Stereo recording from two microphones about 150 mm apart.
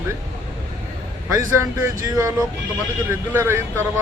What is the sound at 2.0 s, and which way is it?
Speech, 25° right (ahead or behind).